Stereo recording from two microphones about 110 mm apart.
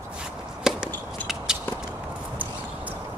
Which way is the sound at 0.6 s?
5° right (ahead or behind).